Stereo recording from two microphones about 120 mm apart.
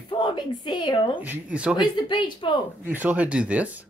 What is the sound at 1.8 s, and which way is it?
Speech, 40° left (ahead or behind).